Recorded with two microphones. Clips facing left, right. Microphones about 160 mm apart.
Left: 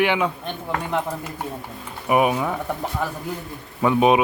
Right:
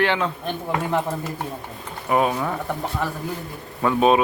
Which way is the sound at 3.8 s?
15° left (ahead or behind).